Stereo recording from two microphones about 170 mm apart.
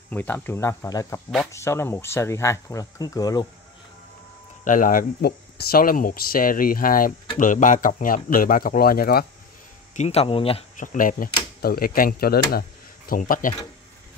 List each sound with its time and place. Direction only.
0.1 s speech: 10° left (ahead or behind)
4.6 s speech: 50° left (ahead or behind)
9.9 s speech: 40° left (ahead or behind)
10.8 s speech: 50° left (ahead or behind)